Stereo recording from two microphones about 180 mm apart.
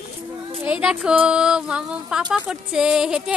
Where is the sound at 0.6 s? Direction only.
5° right (ahead or behind).